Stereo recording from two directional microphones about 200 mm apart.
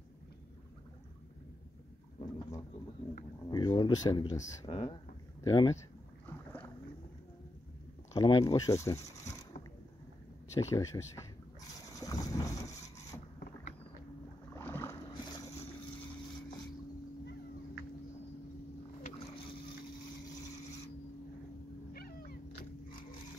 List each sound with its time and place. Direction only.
2.1 s pigeon: 20° left (ahead or behind)
3.4 s speech: 20° left (ahead or behind)
4.6 s speech: 30° left (ahead or behind)
8.1 s speech: 20° left (ahead or behind)
10.7 s speech: 15° left (ahead or behind)
11.9 s boat: 15° left (ahead or behind)
14.5 s boat: 10° left (ahead or behind)
19.0 s boat: 35° left (ahead or behind)
21.9 s cat: 50° left (ahead or behind)